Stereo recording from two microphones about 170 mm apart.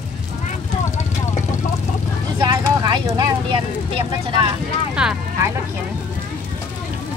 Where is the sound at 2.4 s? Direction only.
20° right (ahead or behind).